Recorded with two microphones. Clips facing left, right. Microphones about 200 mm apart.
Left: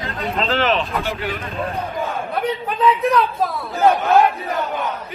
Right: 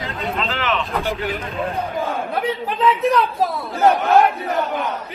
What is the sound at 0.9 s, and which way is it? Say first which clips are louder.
Speech: right 1 dB; 15° right (ahead or behind).